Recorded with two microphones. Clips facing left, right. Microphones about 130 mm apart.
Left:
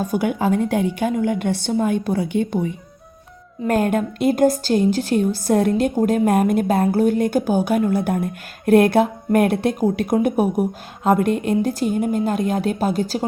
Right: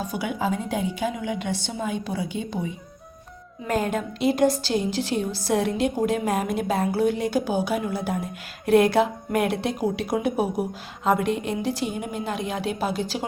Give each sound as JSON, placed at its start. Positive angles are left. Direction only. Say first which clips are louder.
{"t": 0.0, "sound": "a woman's voice", "louder": "left 7 dB", "side_deg": 50}